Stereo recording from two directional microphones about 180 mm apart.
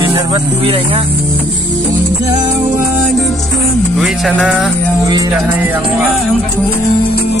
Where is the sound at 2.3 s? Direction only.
35° right (ahead or behind).